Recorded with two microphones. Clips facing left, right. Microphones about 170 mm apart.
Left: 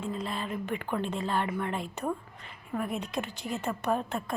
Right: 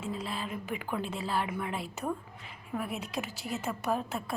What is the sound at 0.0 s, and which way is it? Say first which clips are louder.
A woman's voice: left 2 dB; 5° right (ahead or behind).